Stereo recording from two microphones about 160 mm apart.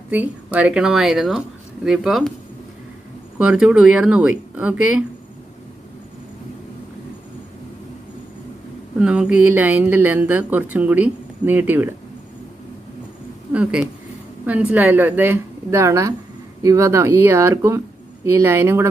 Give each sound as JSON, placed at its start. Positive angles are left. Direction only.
{"t": 0.1, "sound": "speech", "side_deg": -10}
{"t": 3.3, "sound": "speech", "side_deg": -5}
{"t": 8.9, "sound": "speech", "side_deg": -5}
{"t": 13.5, "sound": "speech", "side_deg": -5}